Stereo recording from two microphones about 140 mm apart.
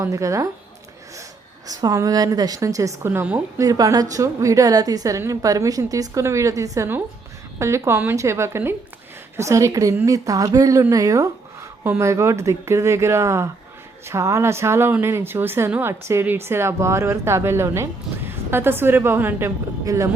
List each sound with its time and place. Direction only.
0.0 s a woman's voice: 20° right (ahead or behind)
1.6 s a woman's voice: 25° right (ahead or behind)
3.6 s a woman's voice: 25° right (ahead or behind)